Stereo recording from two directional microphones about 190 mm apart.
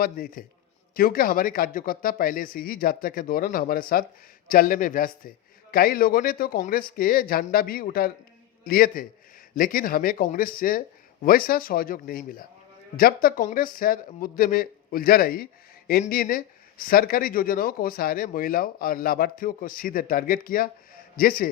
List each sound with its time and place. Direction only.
0.0 s speech: 50° left (ahead or behind)